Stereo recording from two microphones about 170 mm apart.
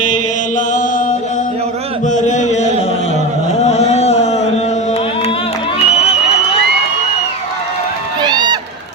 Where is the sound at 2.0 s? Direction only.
45° left (ahead or behind).